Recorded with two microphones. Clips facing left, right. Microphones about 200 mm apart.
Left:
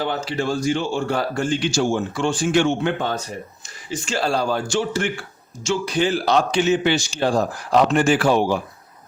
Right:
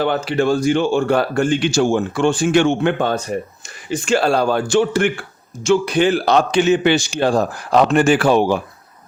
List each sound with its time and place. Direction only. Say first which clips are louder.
0.0 s speech: right 6 dB; 60° right (ahead or behind)